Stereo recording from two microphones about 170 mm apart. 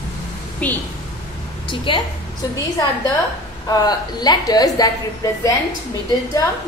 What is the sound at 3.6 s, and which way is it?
A woman's voice, 25° left (ahead or behind).